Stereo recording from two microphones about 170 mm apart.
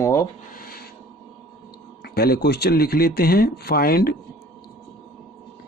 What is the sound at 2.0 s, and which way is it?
Speech, 70° left (ahead or behind).